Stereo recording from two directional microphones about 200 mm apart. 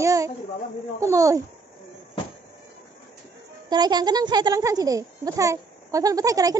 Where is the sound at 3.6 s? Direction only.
20° right (ahead or behind).